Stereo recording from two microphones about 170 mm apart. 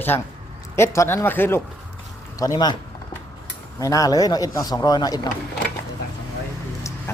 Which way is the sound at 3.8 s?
20° left (ahead or behind).